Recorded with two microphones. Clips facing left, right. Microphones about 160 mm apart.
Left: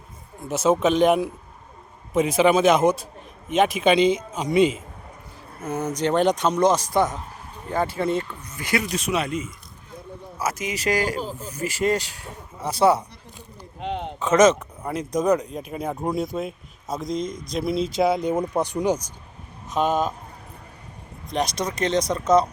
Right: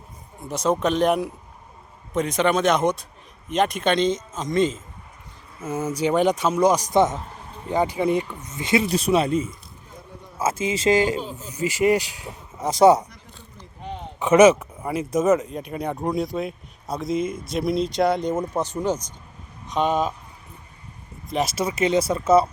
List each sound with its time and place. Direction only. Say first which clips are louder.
0.4 s speech: left 2 dB; 5° left (ahead or behind)
5.6 s speech: right 1 dB; 5° right (ahead or behind); by 13.1 s 20° right (ahead or behind)
13.7 s a sound: left 6 dB; 75° left (ahead or behind)
14.2 s speech: right 3 dB; 10° right (ahead or behind)
21.2 s speech: right 1 dB; 5° right (ahead or behind)